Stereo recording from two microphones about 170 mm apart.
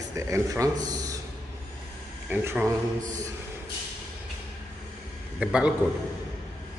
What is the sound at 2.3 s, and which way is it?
Speech, 10° right (ahead or behind).